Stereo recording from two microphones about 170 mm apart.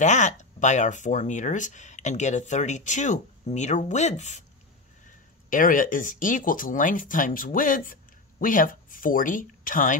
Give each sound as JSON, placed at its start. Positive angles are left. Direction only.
{"t": 0.0, "sound": "speech", "side_deg": 45}
{"t": 5.5, "sound": "speech", "side_deg": 50}